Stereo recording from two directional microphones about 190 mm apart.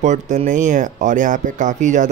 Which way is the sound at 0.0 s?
40° right (ahead or behind).